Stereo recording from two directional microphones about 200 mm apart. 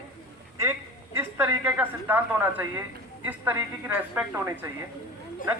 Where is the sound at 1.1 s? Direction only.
10° right (ahead or behind).